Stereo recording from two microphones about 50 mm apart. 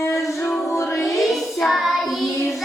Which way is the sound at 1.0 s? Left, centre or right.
Centre.